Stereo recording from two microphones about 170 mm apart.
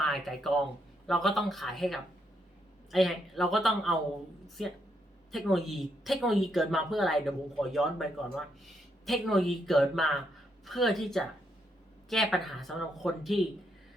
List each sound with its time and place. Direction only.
0.0 s speech: centre (ahead or behind)